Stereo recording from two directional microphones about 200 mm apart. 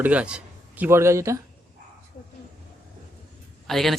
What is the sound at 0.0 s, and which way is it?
A man's voice, 5° right (ahead or behind).